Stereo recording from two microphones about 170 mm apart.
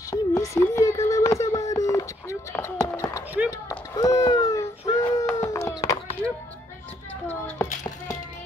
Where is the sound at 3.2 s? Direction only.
10° right (ahead or behind).